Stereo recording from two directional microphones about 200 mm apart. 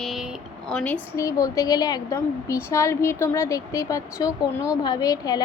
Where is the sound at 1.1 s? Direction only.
15° left (ahead or behind).